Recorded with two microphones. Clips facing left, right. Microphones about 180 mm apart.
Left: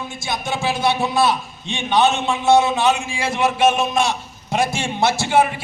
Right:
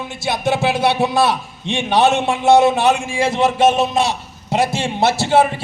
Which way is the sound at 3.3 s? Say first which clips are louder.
Right 2 dB; 35° right (ahead or behind).